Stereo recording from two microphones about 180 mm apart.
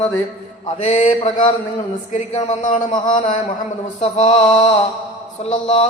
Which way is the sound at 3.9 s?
35° left (ahead or behind).